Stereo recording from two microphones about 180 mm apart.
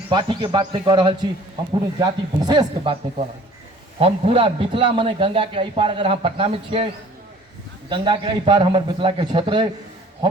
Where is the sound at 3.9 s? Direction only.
35° right (ahead or behind).